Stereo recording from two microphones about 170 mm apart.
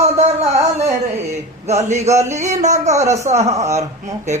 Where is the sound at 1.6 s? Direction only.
40° right (ahead or behind).